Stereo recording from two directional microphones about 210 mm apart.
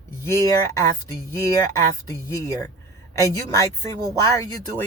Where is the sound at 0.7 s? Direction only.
15° left (ahead or behind).